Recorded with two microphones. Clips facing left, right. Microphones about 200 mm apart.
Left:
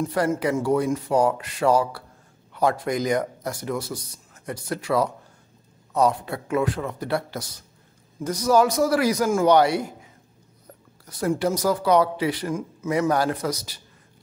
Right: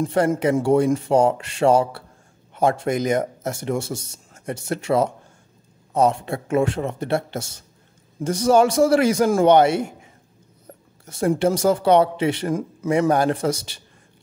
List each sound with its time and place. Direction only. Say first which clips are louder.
0.0 s speech: right 4 dB; 30° right (ahead or behind)
11.1 s speech: right 4 dB; 25° right (ahead or behind)